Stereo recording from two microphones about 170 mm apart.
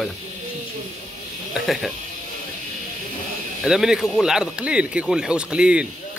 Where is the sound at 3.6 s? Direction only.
Centre (ahead or behind).